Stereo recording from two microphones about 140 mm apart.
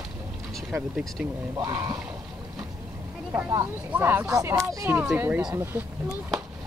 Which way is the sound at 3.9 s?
15° right (ahead or behind).